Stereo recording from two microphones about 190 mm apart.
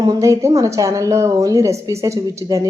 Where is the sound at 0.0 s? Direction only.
20° right (ahead or behind).